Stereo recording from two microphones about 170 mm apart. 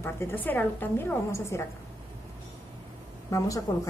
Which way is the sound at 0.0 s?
15° left (ahead or behind).